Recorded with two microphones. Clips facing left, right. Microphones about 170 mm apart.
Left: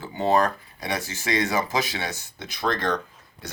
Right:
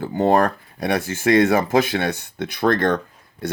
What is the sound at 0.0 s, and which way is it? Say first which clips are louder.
Speech: right 5 dB; 50° right (ahead or behind).